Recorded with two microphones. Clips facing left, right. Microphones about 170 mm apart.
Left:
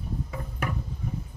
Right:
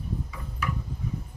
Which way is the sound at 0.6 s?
55° left (ahead or behind).